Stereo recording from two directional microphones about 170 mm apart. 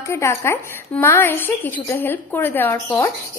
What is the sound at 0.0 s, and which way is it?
Speech, 15° left (ahead or behind).